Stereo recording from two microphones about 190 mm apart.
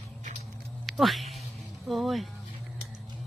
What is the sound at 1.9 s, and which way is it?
Speech, centre (ahead or behind).